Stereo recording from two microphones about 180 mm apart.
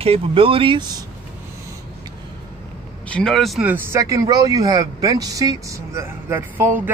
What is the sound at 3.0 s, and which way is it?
Speech, 5° left (ahead or behind).